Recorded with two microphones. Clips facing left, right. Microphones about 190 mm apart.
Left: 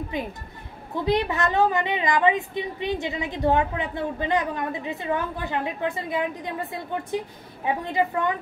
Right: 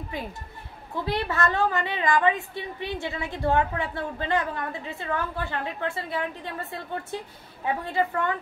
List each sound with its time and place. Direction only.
0.1 s a woman's voice: 20° left (ahead or behind)